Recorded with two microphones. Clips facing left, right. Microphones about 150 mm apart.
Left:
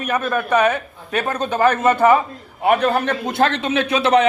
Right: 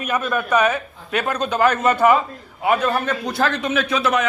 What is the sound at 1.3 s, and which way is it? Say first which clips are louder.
Speech: left 1 dB; 50° left (ahead or behind).